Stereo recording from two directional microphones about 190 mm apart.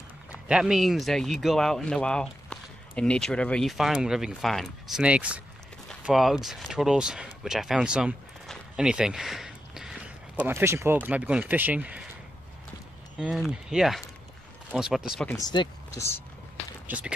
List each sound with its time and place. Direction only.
0.3 s speech: 5° right (ahead or behind)
13.2 s speech: centre (ahead or behind)
15.2 s speech: 20° left (ahead or behind)
16.8 s speech: 5° right (ahead or behind)